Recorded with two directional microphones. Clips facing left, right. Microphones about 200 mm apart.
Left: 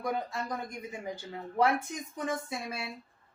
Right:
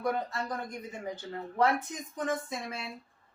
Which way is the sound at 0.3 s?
10° left (ahead or behind).